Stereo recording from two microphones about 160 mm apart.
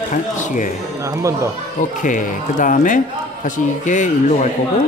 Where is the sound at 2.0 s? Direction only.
55° left (ahead or behind).